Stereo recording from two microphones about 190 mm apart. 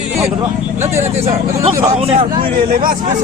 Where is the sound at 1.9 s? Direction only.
30° right (ahead or behind).